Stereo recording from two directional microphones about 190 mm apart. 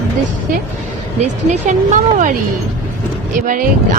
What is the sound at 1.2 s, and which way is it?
Speech, 40° right (ahead or behind).